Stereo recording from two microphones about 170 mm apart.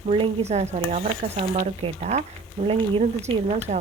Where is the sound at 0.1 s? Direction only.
40° right (ahead or behind).